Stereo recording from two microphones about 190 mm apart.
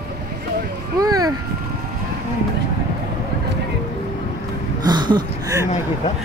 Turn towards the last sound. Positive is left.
turn(degrees=-20)  # may be behind; listen again after turning